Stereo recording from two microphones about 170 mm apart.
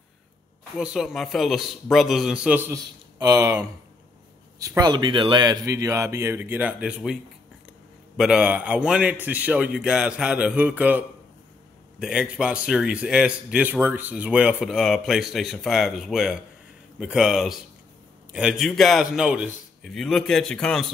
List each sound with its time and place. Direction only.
0.7 s a man's voice: 5° right (ahead or behind)
2.7 s speech: 20° right (ahead or behind); by 7.2 s 5° right (ahead or behind)
8.2 s a man's voice: 5° right (ahead or behind)
19.8 s a man's voice: 5° left (ahead or behind)